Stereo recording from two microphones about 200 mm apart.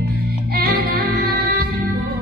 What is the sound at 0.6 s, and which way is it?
Music, 50° right (ahead or behind).